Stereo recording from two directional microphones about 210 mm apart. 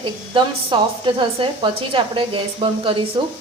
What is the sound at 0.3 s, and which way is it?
A woman's voice, 20° right (ahead or behind).